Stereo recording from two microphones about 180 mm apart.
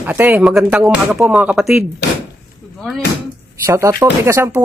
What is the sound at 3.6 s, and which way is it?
Speech, 15° right (ahead or behind).